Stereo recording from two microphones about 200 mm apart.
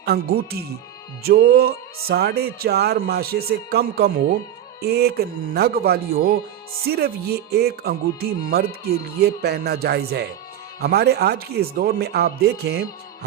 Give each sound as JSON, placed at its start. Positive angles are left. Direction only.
{"t": 0.0, "sound": "speech", "side_deg": -50}